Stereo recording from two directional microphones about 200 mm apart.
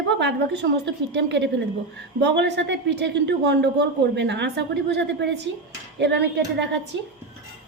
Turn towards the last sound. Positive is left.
turn(degrees=-60)  # may be behind; listen again after turning